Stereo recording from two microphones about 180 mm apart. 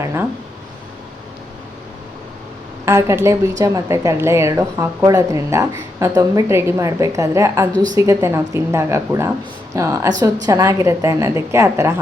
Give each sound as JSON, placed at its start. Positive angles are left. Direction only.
{"t": 0.0, "sound": "a woman's voice", "side_deg": -15}
{"t": 2.8, "sound": "a woman's voice", "side_deg": -15}